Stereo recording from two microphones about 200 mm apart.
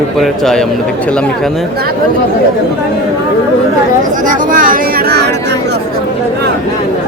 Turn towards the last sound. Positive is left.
turn(degrees=-50)  # may be behind; listen again after turning